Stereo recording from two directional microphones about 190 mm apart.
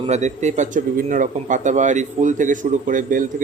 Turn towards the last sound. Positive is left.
turn(degrees=-45)  # may be behind; listen again after turning